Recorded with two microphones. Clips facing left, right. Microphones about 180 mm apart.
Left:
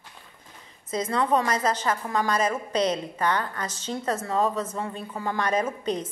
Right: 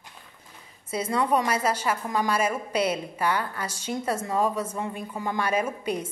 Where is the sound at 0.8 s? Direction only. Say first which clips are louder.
Even; 10° right (ahead or behind).